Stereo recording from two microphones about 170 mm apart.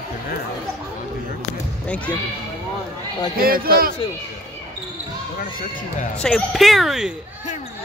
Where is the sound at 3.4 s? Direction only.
60° right (ahead or behind).